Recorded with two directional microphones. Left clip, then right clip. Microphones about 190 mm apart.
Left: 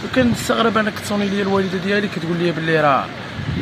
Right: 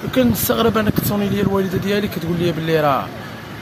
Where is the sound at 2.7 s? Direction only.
10° right (ahead or behind).